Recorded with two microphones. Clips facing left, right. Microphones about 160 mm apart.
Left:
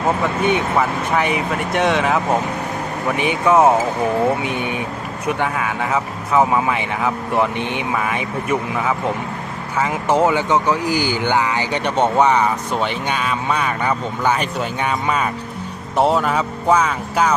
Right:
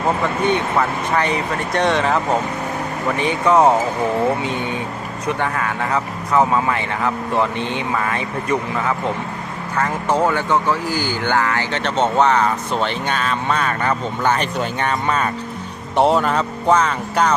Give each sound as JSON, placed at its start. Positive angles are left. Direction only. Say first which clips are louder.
{"t": 0.4, "sound": "speech", "louder": "left 1 dB", "side_deg": 5}
{"t": 4.4, "sound": "speech", "louder": "even", "side_deg": 15}